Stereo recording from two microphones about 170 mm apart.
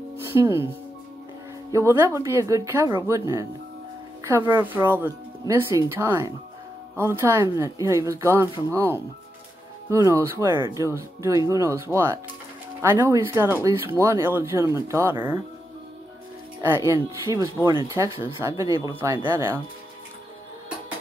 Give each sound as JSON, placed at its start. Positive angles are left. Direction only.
{"t": 0.4, "sound": "speech", "side_deg": -15}
{"t": 16.6, "sound": "speech", "side_deg": -15}